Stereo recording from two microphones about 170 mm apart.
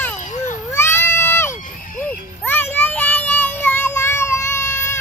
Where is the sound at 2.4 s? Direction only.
10° left (ahead or behind).